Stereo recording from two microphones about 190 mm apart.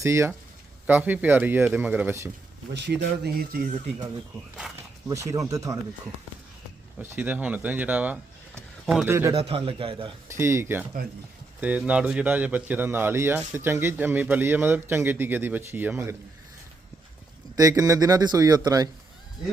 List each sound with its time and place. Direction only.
0.0 s a man's voice: 15° right (ahead or behind)
2.7 s speech: 65° right (ahead or behind)
5.0 s a man's voice: 15° right (ahead or behind)
7.0 s speech: 10° right (ahead or behind)
9.3 s speech: 30° right (ahead or behind)
10.2 s a man's voice: 15° right (ahead or behind)
17.6 s speech: 20° right (ahead or behind)